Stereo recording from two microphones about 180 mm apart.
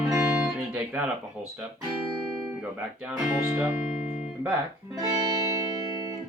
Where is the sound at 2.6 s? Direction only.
5° right (ahead or behind).